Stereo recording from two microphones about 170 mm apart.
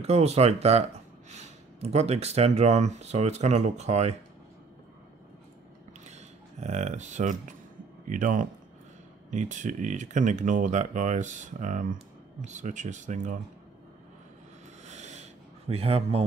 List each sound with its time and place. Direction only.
0.0 s speech: 40° right (ahead or behind)
6.6 s speech: 40° right (ahead or behind)
14.9 s a sound: 40° right (ahead or behind)
15.7 s speech: 35° right (ahead or behind)